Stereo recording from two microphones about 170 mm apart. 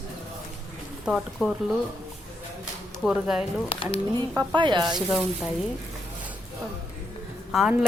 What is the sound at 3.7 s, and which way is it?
Speech, 30° left (ahead or behind).